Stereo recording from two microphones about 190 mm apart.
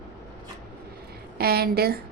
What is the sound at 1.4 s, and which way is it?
Speech, 55° right (ahead or behind).